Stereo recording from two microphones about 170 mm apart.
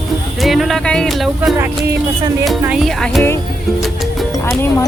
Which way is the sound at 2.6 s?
5° right (ahead or behind).